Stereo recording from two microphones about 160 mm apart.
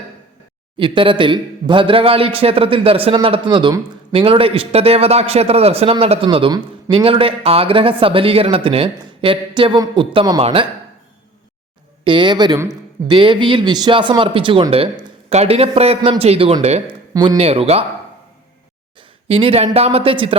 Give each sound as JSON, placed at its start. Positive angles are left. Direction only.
{"t": 0.8, "sound": "a man's voice", "side_deg": -30}
{"t": 12.0, "sound": "a man's voice", "side_deg": -30}
{"t": 18.9, "sound": "a sound", "side_deg": -35}
{"t": 19.6, "sound": "a man's voice", "side_deg": -40}